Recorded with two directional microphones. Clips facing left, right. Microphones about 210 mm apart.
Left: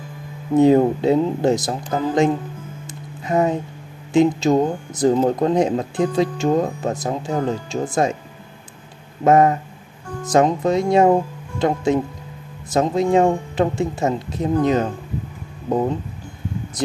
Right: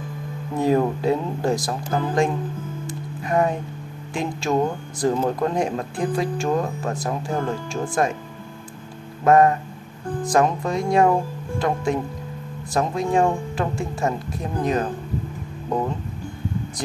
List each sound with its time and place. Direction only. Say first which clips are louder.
0.6 s speech: left 6 dB; 25° left (ahead or behind)
2.9 s music: left 2 dB; 20° left (ahead or behind)
4.1 s speech: left 8 dB; 20° left (ahead or behind)
9.2 s speech: left 1 dB; 20° left (ahead or behind)